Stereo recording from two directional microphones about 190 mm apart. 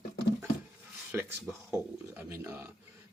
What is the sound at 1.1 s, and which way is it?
Speech, 10° right (ahead or behind).